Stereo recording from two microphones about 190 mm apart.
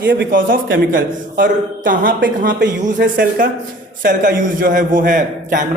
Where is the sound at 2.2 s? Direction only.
70° right (ahead or behind).